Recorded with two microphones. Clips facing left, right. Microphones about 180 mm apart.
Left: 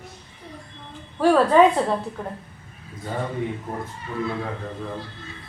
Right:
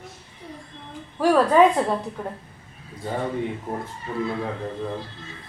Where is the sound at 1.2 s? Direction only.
10° right (ahead or behind).